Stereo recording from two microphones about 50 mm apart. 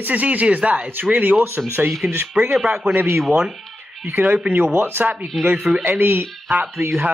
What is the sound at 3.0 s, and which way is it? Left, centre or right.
Speech, right.